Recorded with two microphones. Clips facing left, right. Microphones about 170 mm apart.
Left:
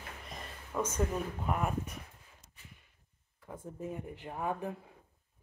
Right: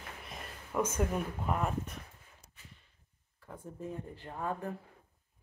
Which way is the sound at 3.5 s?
15° left (ahead or behind).